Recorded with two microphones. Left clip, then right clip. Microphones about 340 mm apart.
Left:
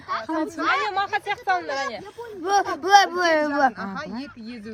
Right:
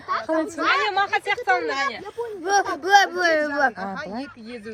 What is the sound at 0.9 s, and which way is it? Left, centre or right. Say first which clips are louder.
Speech: right 3 dB; left.